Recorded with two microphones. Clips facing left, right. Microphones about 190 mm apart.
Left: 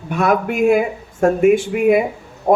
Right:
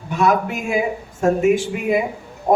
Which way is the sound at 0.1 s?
55° left (ahead or behind).